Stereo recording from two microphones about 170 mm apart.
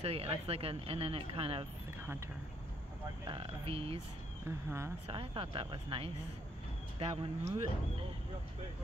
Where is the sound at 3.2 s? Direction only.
30° right (ahead or behind).